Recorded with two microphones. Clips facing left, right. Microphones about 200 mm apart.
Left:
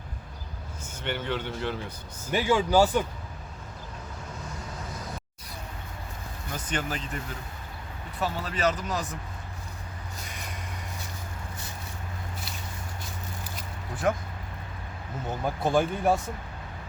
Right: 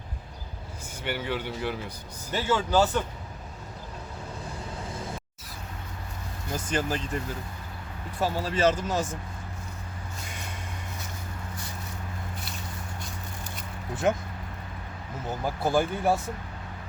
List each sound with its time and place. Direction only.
1.0 s speech: 10° right (ahead or behind)
2.3 s speech: 10° left (ahead or behind)
6.5 s speech: 30° right (ahead or behind)
8.2 s speech: 30° right (ahead or behind)
13.9 s speech: 25° right (ahead or behind)
15.4 s speech: 5° right (ahead or behind)